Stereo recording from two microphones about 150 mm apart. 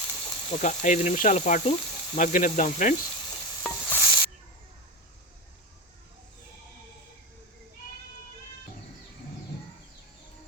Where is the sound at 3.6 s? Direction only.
15° left (ahead or behind).